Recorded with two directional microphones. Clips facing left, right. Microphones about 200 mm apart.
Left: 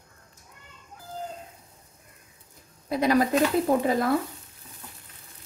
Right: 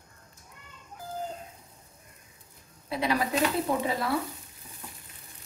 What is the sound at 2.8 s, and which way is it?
Speech, 45° left (ahead or behind).